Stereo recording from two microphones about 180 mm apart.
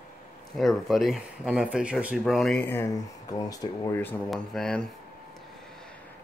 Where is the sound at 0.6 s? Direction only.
Centre (ahead or behind).